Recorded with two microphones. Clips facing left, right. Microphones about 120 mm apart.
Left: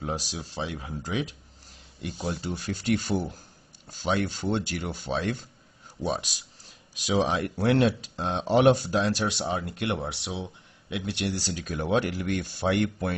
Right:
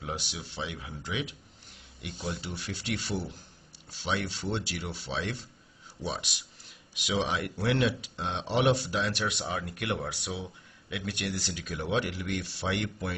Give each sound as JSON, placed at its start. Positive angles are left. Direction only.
{"t": 0.0, "sound": "speech", "side_deg": 40}